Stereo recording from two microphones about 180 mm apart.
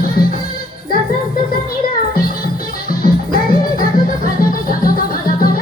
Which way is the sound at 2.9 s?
55° left (ahead or behind).